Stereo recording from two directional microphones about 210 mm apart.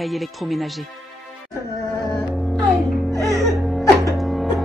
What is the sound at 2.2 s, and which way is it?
Music, centre (ahead or behind).